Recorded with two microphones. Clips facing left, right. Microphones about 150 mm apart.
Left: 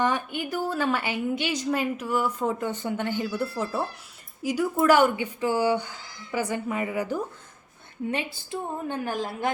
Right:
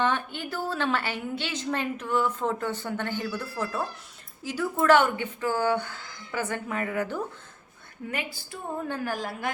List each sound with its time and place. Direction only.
0.0 s a woman's voice: 10° left (ahead or behind)
8.1 s a woman's voice: 25° left (ahead or behind)